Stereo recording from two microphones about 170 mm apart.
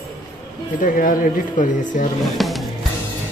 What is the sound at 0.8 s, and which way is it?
Speech, 55° left (ahead or behind).